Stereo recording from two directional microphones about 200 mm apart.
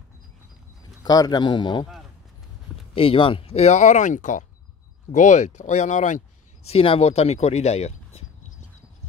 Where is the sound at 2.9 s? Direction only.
25° left (ahead or behind).